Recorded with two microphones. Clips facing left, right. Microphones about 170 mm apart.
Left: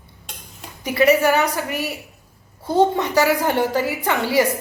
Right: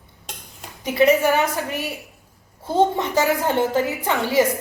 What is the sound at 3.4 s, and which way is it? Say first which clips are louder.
Speech: even; 20° right (ahead or behind).